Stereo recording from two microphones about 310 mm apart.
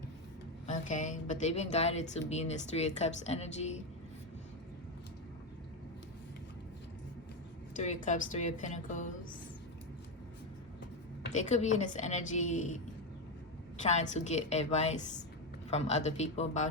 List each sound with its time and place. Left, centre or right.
0.7 s speech: left
7.8 s speech: left
11.3 s speech: left
13.8 s speech: left